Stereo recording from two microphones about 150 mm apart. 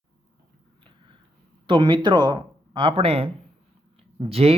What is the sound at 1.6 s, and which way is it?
Speech, 35° right (ahead or behind).